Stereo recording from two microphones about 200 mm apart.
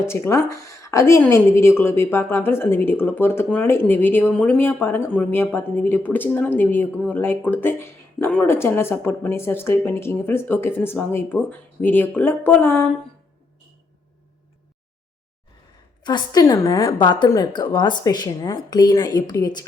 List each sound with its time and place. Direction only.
0.0 s a woman's voice: 15° left (ahead or behind)
16.0 s a woman's voice: 20° left (ahead or behind)